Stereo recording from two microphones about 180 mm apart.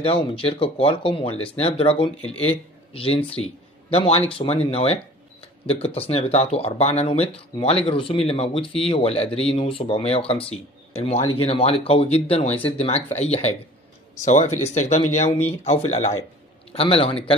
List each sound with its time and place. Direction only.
0.0 s speech: 30° left (ahead or behind)